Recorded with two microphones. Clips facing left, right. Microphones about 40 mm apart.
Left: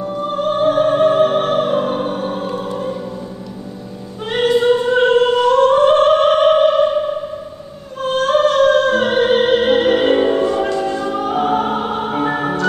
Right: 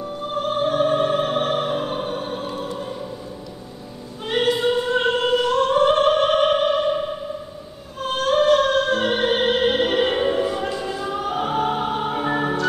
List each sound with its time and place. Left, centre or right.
0.0 s opera: centre
0.3 s opera: centre
4.3 s music: centre
8.0 s opera: centre
10.7 s music: centre